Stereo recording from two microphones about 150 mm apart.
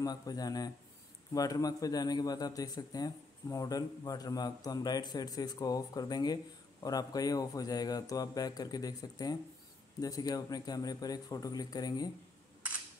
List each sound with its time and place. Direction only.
0.0 s speech: 25° left (ahead or behind)